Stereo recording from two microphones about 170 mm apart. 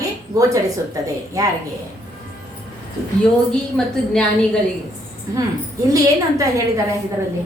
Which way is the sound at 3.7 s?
5° left (ahead or behind).